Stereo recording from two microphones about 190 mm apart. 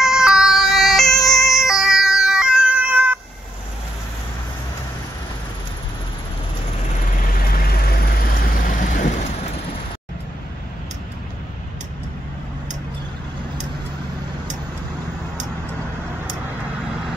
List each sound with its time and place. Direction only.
0.0 s emergency vehicle: 5° right (ahead or behind)
7.2 s vehicle: 50° left (ahead or behind)